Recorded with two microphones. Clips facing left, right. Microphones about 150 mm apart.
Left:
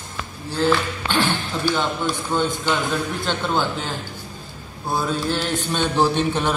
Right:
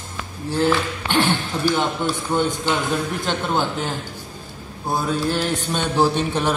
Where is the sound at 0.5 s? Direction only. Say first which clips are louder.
Even; 20° right (ahead or behind).